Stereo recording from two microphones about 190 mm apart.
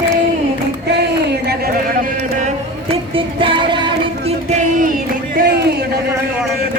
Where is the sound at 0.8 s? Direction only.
60° right (ahead or behind).